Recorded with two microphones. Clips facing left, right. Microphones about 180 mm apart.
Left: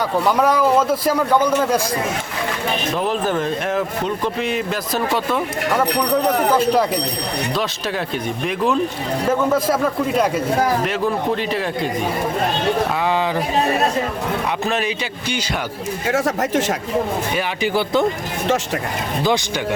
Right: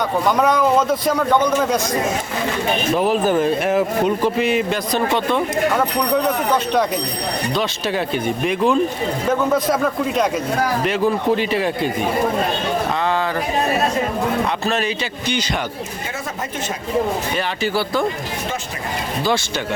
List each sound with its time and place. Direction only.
0.3 s a man's voice: 10° left (ahead or behind)
3.0 s a man's voice: 5° right (ahead or behind)
14.6 s a man's voice: 15° left (ahead or behind)
16.0 s speech: 85° left
17.3 s a man's voice: 15° left (ahead or behind)
19.2 s a man's voice: 15° left (ahead or behind)